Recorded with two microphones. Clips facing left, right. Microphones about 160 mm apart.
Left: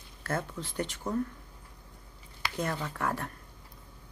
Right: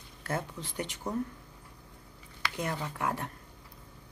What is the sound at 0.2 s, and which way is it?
Speech, 15° right (ahead or behind).